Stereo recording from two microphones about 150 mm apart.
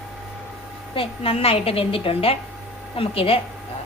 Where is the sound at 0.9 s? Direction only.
40° left (ahead or behind).